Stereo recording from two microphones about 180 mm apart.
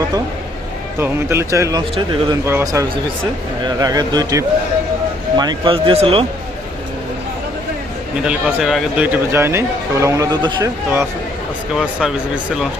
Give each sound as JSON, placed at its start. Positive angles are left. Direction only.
{"t": 0.9, "sound": "speech", "side_deg": -15}
{"t": 8.2, "sound": "speech", "side_deg": -5}
{"t": 11.7, "sound": "speech", "side_deg": -5}